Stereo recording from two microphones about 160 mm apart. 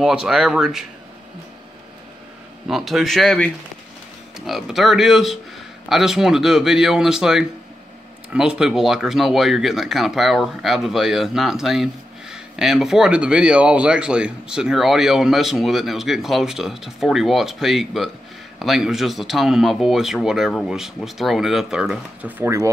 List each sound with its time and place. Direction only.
0.0 s speech: 5° right (ahead or behind)
2.7 s speech: centre (ahead or behind)
22.4 s speech: 20° right (ahead or behind)